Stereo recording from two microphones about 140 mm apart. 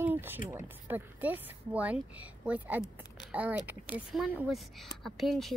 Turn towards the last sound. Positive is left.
turn(degrees=0)  # may be behind; listen again after turning